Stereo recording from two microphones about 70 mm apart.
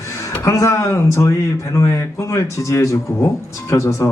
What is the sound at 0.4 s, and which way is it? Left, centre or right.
A man's voice, left.